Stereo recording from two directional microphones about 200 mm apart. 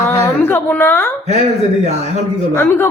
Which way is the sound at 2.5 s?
10° left (ahead or behind).